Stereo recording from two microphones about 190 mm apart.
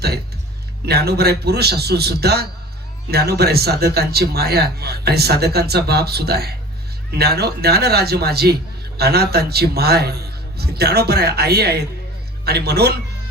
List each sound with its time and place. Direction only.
0.9 s a man's voice: 60° right (ahead or behind)